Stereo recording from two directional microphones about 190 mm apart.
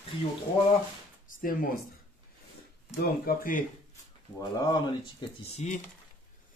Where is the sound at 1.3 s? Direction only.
45° left (ahead or behind).